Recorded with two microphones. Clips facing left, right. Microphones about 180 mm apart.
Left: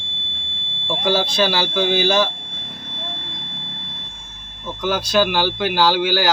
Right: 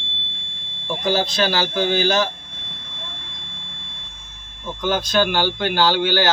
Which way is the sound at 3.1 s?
60° left (ahead or behind).